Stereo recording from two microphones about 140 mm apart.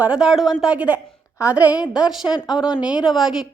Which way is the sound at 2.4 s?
30° left (ahead or behind).